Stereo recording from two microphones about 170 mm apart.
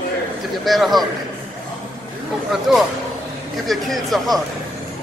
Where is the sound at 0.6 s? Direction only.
Centre (ahead or behind).